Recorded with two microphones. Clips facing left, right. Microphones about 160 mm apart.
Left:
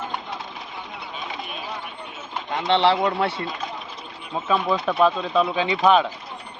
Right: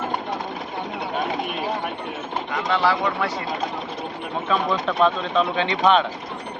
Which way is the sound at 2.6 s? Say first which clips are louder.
Left 3 dB; 25° left (ahead or behind).